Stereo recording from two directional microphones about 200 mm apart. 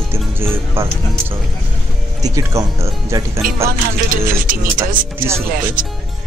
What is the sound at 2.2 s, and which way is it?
Speech, 15° right (ahead or behind).